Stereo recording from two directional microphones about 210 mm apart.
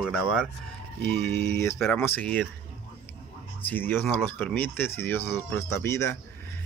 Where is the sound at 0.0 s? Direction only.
Centre (ahead or behind).